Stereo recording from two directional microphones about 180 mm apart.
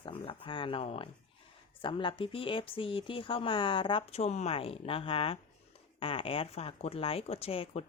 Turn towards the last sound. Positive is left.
turn(degrees=35)  # may be behind; listen again after turning